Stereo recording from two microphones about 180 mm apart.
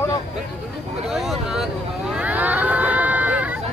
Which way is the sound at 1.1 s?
Centre (ahead or behind).